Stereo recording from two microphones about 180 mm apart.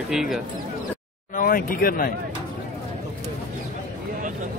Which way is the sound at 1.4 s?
50° left (ahead or behind).